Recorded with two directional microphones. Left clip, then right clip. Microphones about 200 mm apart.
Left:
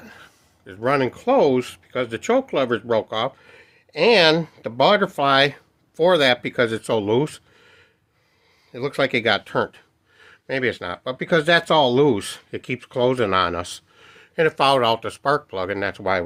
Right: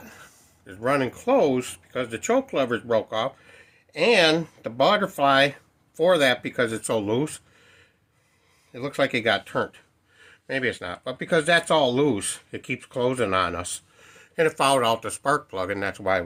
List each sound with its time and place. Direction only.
0.0 s speech: 45° left (ahead or behind)